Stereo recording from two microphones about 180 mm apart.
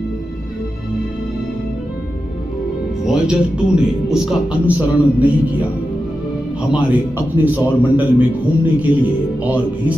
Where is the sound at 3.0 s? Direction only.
5° right (ahead or behind).